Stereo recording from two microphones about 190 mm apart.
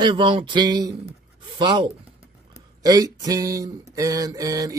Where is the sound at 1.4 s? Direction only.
25° right (ahead or behind).